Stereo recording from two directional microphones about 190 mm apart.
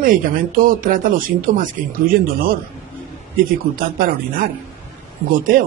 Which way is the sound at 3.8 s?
50° right (ahead or behind).